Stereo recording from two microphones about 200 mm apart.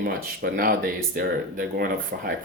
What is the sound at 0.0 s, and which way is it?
Speech, 45° right (ahead or behind).